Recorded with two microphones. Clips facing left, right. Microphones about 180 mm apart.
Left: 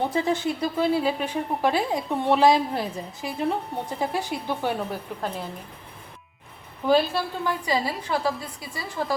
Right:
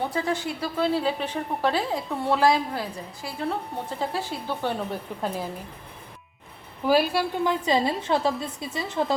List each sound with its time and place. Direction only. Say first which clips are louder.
0.1 s a woman's voice: left 3 dB; 20° left (ahead or behind)
6.8 s a woman's voice: even; 10° right (ahead or behind)
7.6 s a woman's voice: right 3 dB; 25° right (ahead or behind)